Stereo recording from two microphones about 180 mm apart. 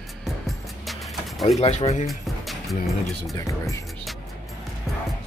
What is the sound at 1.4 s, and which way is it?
Speech, 35° left (ahead or behind).